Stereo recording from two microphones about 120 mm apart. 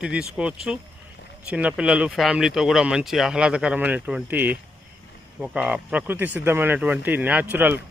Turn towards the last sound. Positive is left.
turn(degrees=-15)  # may be behind; listen again after turning